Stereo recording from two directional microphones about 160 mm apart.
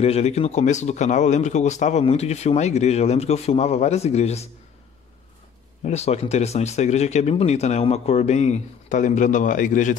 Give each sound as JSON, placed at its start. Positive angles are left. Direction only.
{"t": 0.0, "sound": "speech", "side_deg": 40}
{"t": 5.9, "sound": "speech", "side_deg": 40}